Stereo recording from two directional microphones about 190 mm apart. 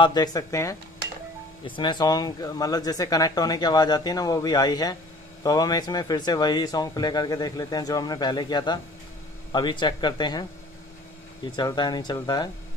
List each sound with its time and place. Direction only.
0.0 s speech: 20° left (ahead or behind)
11.4 s speech: 25° left (ahead or behind)